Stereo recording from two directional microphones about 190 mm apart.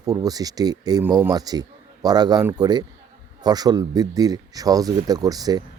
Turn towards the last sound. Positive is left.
turn(degrees=-20)  # may be behind; listen again after turning